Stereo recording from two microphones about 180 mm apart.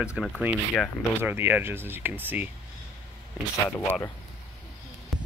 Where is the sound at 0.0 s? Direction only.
5° right (ahead or behind).